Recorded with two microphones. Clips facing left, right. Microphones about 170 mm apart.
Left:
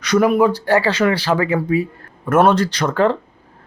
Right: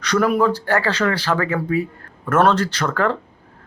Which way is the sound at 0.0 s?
10° left (ahead or behind).